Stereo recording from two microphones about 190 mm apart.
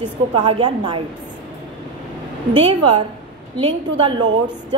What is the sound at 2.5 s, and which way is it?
A woman's voice, 25° right (ahead or behind).